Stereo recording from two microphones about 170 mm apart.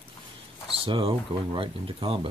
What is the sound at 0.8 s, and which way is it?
Speech, 30° right (ahead or behind).